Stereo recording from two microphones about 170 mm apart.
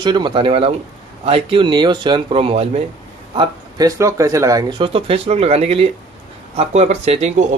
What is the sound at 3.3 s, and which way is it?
Speech, 20° right (ahead or behind).